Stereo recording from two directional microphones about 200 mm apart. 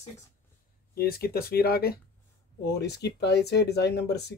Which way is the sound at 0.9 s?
50° left (ahead or behind).